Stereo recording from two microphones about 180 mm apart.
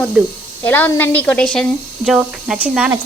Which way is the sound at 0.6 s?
10° left (ahead or behind).